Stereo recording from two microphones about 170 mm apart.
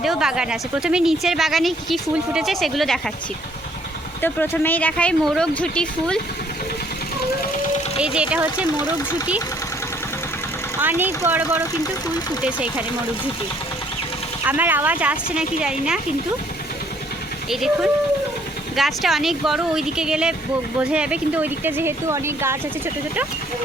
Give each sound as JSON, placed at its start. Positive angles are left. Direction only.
{"t": 0.0, "sound": "speech", "side_deg": 0}
{"t": 4.2, "sound": "speech", "side_deg": 10}
{"t": 8.0, "sound": "speech", "side_deg": -5}
{"t": 10.8, "sound": "speech", "side_deg": -10}
{"t": 11.7, "sound": "speech", "side_deg": 20}
{"t": 12.4, "sound": "speech", "side_deg": -5}
{"t": 14.4, "sound": "speech", "side_deg": -10}
{"t": 17.5, "sound": "speech", "side_deg": 0}